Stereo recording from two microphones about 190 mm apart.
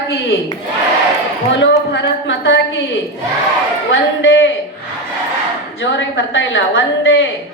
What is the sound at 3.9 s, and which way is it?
Speech, 80° left.